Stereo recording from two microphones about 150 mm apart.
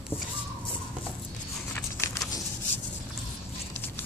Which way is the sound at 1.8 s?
20° left (ahead or behind).